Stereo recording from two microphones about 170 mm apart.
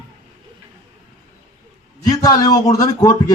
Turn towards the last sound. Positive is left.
turn(degrees=20)  # may be behind; listen again after turning